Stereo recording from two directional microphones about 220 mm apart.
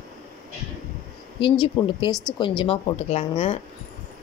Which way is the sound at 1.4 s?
20° left (ahead or behind).